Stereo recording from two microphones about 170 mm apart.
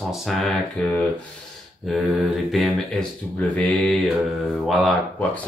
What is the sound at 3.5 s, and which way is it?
Mantra, 10° left (ahead or behind).